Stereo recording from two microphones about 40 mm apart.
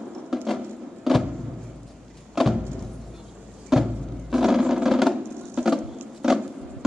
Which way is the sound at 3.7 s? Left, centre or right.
Centre.